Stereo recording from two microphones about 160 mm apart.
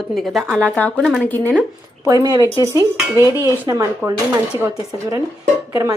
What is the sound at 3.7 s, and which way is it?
Speech, 20° right (ahead or behind).